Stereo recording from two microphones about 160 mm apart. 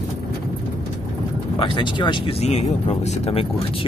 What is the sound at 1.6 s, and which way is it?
Speech, 30° left (ahead or behind).